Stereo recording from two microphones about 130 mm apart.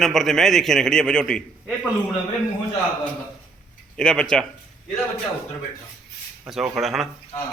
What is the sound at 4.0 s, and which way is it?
Speech, 5° left (ahead or behind).